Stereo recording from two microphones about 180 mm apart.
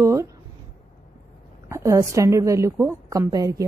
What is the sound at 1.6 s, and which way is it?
A woman's voice, 15° right (ahead or behind).